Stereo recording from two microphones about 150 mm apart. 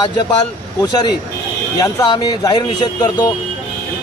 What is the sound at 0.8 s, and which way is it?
A man's voice, 30° left (ahead or behind).